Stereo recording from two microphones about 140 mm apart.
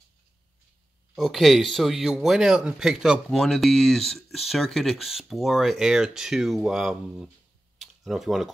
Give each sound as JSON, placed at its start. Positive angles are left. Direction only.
{"t": 1.1, "sound": "a man's voice", "side_deg": 0}
{"t": 7.8, "sound": "typing", "side_deg": 0}